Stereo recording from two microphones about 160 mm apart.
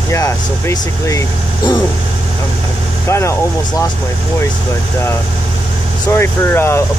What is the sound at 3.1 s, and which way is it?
Speech, 15° left (ahead or behind).